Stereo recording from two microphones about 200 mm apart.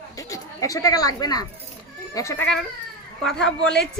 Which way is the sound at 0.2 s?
15° left (ahead or behind).